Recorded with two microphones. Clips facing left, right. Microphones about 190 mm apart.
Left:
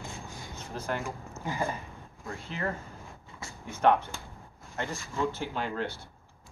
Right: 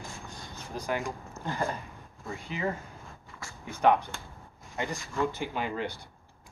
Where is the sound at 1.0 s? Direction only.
10° left (ahead or behind).